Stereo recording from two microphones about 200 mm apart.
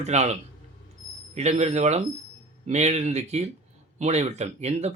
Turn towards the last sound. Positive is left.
turn(degrees=-35)  # may be behind; listen again after turning